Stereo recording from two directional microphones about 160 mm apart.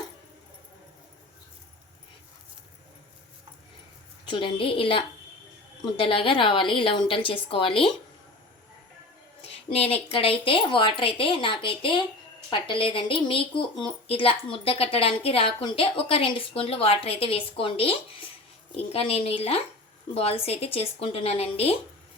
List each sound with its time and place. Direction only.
4.3 s speech: 30° left (ahead or behind)
9.4 s speech: 40° left (ahead or behind)